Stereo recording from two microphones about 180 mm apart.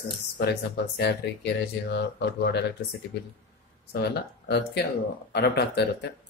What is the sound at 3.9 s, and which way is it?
Speech, 65° left (ahead or behind).